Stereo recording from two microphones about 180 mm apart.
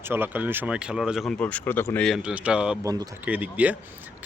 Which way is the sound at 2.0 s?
5° right (ahead or behind).